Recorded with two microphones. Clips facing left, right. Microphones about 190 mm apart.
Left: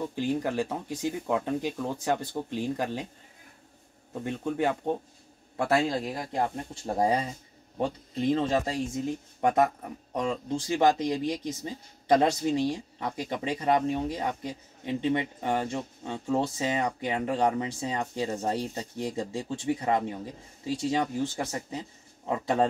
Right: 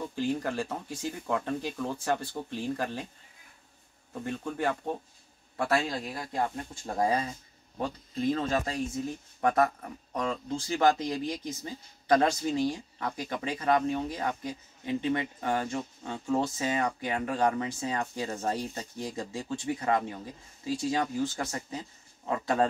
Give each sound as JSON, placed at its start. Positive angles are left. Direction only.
{"t": 0.1, "sound": "speech", "side_deg": 15}
{"t": 4.1, "sound": "speech", "side_deg": 20}